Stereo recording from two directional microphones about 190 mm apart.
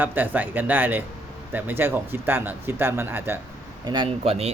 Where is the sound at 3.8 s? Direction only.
25° right (ahead or behind).